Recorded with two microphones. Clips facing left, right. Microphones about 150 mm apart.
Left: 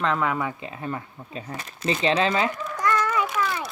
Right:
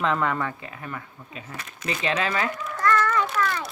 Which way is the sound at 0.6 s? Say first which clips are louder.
Left 5 dB; 25° left (ahead or behind).